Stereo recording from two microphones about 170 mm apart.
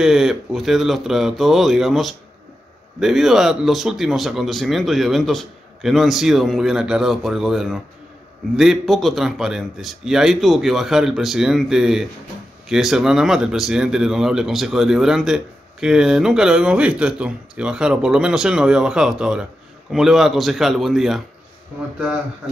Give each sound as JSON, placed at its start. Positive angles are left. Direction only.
{"t": 0.0, "sound": "speech", "side_deg": -5}